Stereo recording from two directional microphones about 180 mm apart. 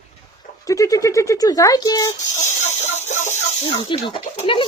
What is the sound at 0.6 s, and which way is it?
Speech, 20° left (ahead or behind).